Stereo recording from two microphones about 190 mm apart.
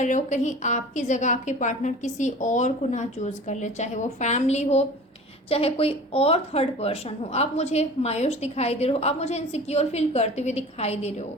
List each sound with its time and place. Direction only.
0.0 s speech: 40° left (ahead or behind)